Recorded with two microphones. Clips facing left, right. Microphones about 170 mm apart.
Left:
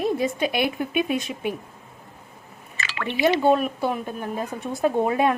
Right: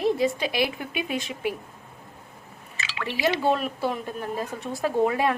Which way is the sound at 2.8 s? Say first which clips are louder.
Left 3 dB; 55° left (ahead or behind).